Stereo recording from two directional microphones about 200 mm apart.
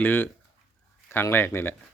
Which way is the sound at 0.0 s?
10° left (ahead or behind).